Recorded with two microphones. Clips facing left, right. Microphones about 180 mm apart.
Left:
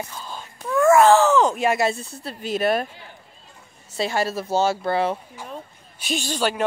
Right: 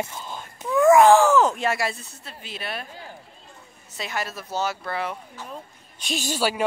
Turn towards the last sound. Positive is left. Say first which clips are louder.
# left 1 dB
turn(degrees=-5)  # may be behind; listen again after turning